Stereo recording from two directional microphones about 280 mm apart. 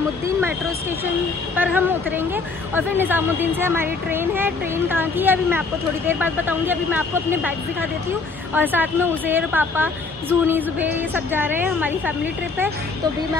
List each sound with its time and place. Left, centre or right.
1.6 s speech: centre
8.5 s speech: centre